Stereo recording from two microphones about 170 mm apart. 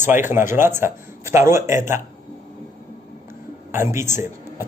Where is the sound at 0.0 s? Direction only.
10° right (ahead or behind).